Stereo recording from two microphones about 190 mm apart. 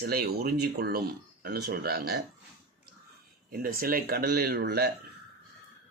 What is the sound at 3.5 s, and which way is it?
Speech, 50° right (ahead or behind).